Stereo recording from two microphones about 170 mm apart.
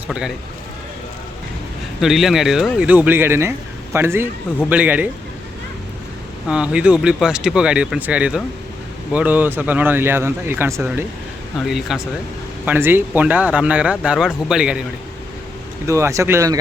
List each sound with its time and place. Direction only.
0.1 s speech: 5° right (ahead or behind)
2.0 s speech: centre (ahead or behind)
6.5 s speech: 5° right (ahead or behind)
11.6 s speech: centre (ahead or behind)
12.6 s speech: 10° right (ahead or behind)
15.9 s speech: 15° right (ahead or behind)